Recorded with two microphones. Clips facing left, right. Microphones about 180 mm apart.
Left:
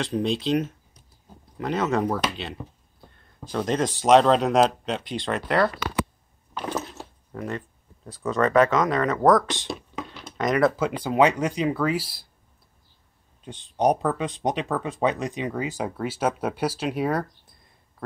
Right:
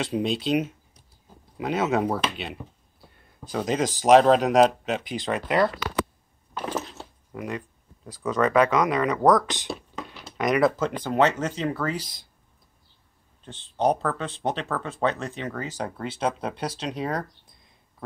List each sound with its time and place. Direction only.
0.0 s speech: centre (ahead or behind)
1.6 s speech: 5° right (ahead or behind)
7.3 s speech: 10° right (ahead or behind)
8.7 s speech: 15° right (ahead or behind)
9.2 s speech: centre (ahead or behind)
10.3 s speech: 15° right (ahead or behind)
10.6 s speech: 10° left (ahead or behind)
13.4 s speech: 15° left (ahead or behind)